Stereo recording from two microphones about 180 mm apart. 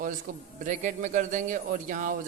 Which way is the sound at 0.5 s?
45° right (ahead or behind).